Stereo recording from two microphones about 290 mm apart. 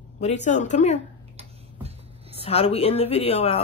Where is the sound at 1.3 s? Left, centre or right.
Right.